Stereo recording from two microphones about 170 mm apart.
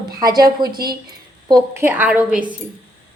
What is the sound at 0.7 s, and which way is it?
Speech, 65° right (ahead or behind).